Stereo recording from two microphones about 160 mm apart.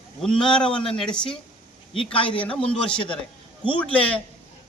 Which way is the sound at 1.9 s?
35° left (ahead or behind).